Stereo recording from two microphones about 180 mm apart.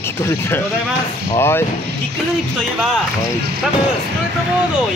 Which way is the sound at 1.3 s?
15° left (ahead or behind).